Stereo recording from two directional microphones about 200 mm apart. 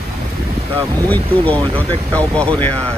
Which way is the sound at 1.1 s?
10° left (ahead or behind).